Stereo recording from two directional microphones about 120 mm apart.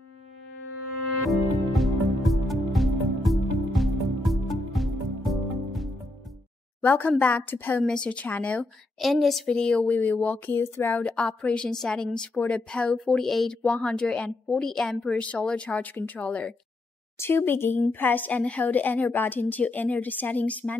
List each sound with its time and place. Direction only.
1.2 s music: centre (ahead or behind)
6.8 s speech: 15° left (ahead or behind)
9.0 s speech: centre (ahead or behind)